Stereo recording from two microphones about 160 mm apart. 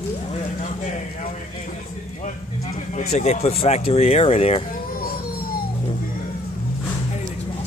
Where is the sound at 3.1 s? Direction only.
45° left (ahead or behind).